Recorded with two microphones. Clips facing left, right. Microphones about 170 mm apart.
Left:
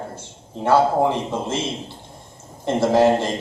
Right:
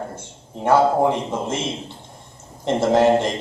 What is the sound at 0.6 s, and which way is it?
Speech, 15° right (ahead or behind).